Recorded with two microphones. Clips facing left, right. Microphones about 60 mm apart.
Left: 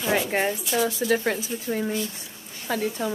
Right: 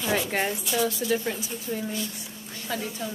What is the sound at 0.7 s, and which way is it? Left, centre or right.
Speech, left.